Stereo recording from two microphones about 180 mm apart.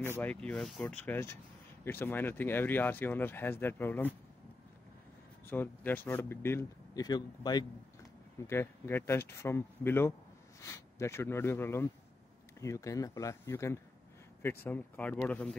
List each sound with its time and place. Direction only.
0.0 s speech: 10° left (ahead or behind)
5.5 s speech: 10° left (ahead or behind)
8.5 s speech: 15° left (ahead or behind)